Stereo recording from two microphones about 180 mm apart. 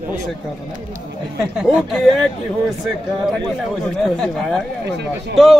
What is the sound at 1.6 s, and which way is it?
Speech, 5° right (ahead or behind).